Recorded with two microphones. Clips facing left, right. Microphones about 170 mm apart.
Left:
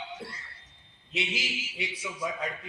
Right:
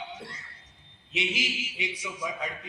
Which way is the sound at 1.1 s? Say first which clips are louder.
Right 2 dB; 20° right (ahead or behind).